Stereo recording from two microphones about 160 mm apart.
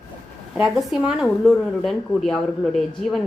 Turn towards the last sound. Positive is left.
turn(degrees=0)  # may be behind; listen again after turning